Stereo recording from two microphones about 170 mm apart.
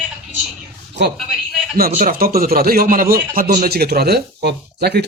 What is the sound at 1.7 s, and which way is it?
Speech, 55° right (ahead or behind).